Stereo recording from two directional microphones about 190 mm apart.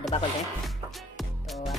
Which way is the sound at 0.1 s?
30° left (ahead or behind).